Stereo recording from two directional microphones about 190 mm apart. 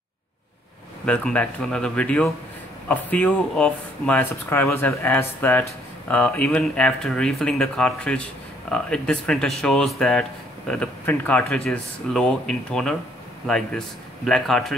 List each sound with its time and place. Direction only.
1.0 s speech: 5° left (ahead or behind)